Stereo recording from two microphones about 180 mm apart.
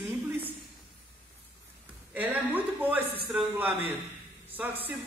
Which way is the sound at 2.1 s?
10° right (ahead or behind).